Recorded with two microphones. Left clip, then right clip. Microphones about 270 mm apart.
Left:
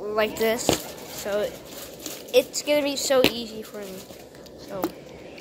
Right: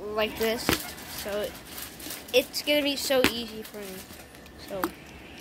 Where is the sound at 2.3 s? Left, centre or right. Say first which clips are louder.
Left 3 dB; centre.